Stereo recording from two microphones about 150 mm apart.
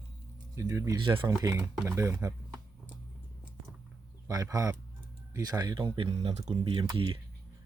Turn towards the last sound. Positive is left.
turn(degrees=-35)  # may be behind; listen again after turning